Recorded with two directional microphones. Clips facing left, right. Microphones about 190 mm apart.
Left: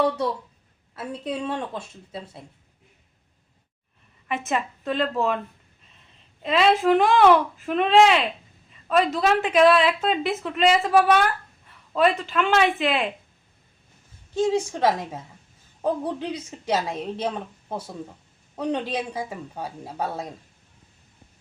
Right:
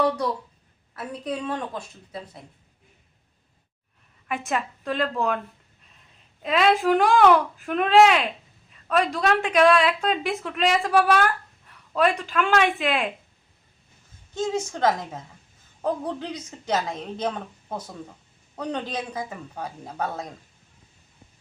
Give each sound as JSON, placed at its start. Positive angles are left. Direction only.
{"t": 0.9, "sound": "a woman's voice", "side_deg": 25}
{"t": 4.3, "sound": "a woman's voice", "side_deg": 0}
{"t": 6.4, "sound": "a woman's voice", "side_deg": 0}
{"t": 14.3, "sound": "a woman's voice", "side_deg": 30}
{"t": 14.7, "sound": "a woman's voice", "side_deg": 10}
{"t": 18.5, "sound": "a man's voice", "side_deg": 10}
{"t": 18.9, "sound": "a woman's voice", "side_deg": 30}
{"t": 19.8, "sound": "a woman's voice", "side_deg": 5}